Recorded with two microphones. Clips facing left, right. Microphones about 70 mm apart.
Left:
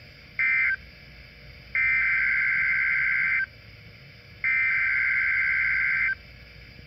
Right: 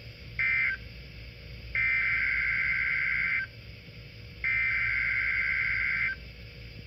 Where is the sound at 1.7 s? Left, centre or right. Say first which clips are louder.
Left 4 dB; left.